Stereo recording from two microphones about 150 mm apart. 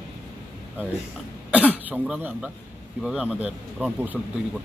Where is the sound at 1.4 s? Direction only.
10° right (ahead or behind).